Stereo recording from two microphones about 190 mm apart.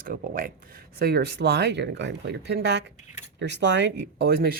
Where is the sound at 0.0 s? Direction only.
45° right (ahead or behind).